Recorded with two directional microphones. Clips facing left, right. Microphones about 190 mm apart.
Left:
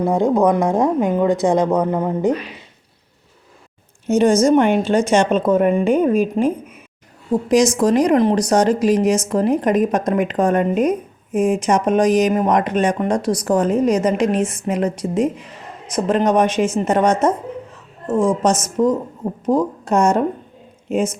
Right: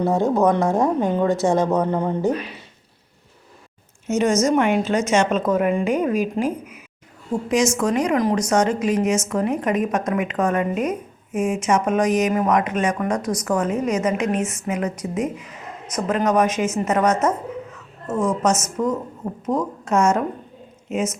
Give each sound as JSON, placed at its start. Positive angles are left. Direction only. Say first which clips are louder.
{"t": 0.0, "sound": "speech", "louder": "left 2 dB", "side_deg": 15}
{"t": 4.0, "sound": "a woman's voice", "louder": "left 5 dB", "side_deg": 30}
{"t": 7.4, "sound": "speech", "louder": "left 5 dB", "side_deg": 35}
{"t": 18.4, "sound": "speech", "louder": "left 4 dB", "side_deg": 30}